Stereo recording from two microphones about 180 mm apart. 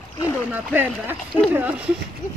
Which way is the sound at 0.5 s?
10° right (ahead or behind).